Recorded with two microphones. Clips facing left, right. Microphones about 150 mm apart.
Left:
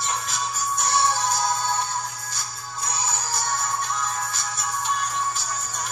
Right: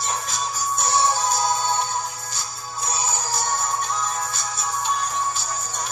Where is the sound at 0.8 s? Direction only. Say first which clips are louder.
Right 2 dB; 20° right (ahead or behind).